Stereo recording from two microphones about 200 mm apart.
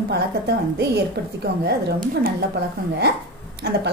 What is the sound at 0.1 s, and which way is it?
A woman's voice, 55° right (ahead or behind).